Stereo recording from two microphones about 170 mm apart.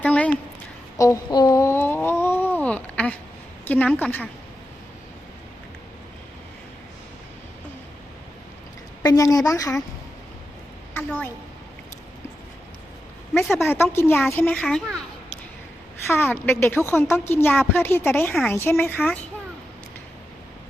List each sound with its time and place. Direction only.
0.0 s a sound: 5° left (ahead or behind)
0.9 s a sound: 20° left (ahead or behind)
3.7 s a woman's voice: 10° left (ahead or behind)
9.0 s a woman's voice: 20° left (ahead or behind)
10.9 s a woman's voice: 10° left (ahead or behind)
13.3 s a woman's voice: 15° left (ahead or behind)
16.0 s a woman's voice: 15° left (ahead or behind)